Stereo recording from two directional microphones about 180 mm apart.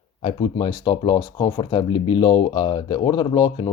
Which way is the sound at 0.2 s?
30° left (ahead or behind).